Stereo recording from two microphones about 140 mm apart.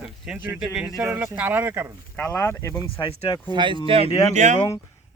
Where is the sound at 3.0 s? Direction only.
30° left (ahead or behind).